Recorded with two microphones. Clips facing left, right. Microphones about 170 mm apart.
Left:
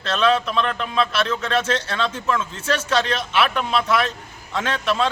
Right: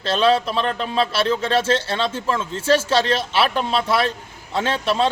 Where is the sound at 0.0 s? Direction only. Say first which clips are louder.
Right 2 dB; 30° right (ahead or behind).